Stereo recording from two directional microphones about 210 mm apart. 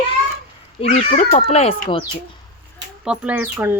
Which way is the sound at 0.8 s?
35° left (ahead or behind).